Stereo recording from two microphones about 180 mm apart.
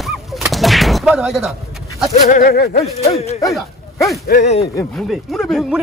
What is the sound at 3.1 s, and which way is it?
Speech, 35° left (ahead or behind).